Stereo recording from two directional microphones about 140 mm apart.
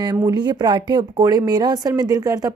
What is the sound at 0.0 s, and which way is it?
Speech, 30° right (ahead or behind).